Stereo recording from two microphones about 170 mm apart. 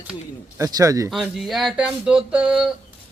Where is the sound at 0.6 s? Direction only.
20° right (ahead or behind).